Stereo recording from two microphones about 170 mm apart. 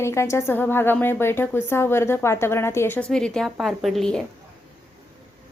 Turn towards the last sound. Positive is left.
turn(degrees=5)  # may be behind; listen again after turning